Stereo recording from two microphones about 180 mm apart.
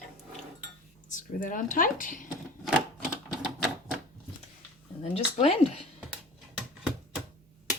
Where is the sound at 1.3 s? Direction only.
45° left (ahead or behind).